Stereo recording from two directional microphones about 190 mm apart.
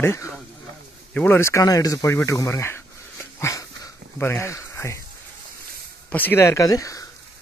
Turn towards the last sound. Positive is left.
turn(degrees=20)  # may be behind; listen again after turning